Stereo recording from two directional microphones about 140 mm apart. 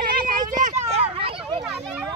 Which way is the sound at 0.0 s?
80° right.